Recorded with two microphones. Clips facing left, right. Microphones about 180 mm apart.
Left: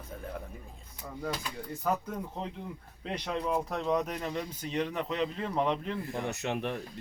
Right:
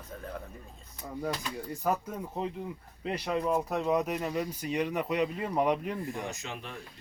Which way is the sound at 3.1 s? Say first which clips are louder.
Right 3 dB; 5° right (ahead or behind).